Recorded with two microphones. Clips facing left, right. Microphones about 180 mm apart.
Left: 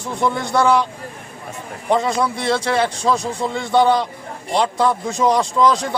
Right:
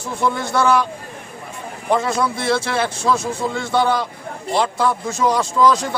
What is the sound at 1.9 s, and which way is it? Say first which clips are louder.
A man's voice: left 1 dB; 20° left (ahead or behind).